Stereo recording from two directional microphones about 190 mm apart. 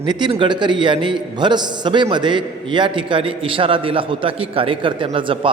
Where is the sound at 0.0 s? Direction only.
25° right (ahead or behind).